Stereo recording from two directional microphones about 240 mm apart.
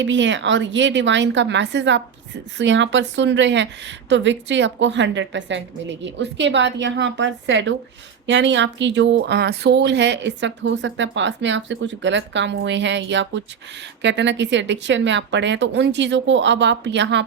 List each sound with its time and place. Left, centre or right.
0.0 s speech: right